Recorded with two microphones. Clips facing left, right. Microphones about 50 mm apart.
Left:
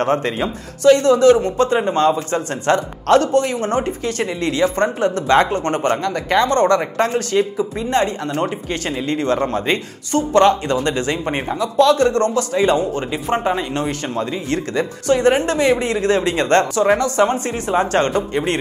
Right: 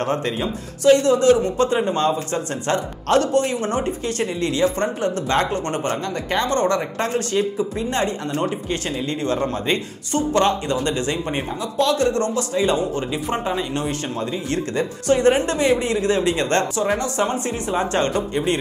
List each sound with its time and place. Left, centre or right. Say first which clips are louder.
0.0 s speech: left 4 dB; left
8.6 s speech: left 2 dB; left
13.8 s speech: left 3 dB; left